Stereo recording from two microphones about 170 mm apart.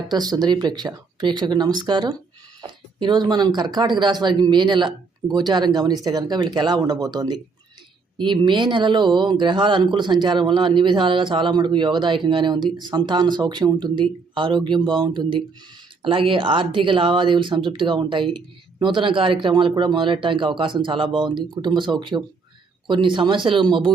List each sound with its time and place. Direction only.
0.1 s speech: 25° right (ahead or behind)